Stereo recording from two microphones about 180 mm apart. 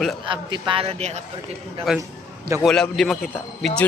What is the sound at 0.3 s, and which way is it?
Speech, 25° right (ahead or behind).